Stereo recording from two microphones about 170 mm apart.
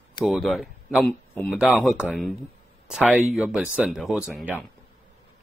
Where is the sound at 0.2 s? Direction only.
Centre (ahead or behind).